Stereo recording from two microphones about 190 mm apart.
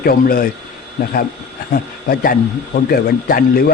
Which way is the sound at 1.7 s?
50° left (ahead or behind).